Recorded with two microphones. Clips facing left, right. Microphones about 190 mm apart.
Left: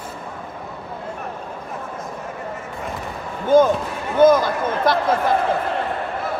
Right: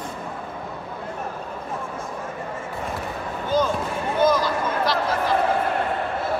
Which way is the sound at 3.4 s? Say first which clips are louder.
Left 8 dB; 50° left (ahead or behind).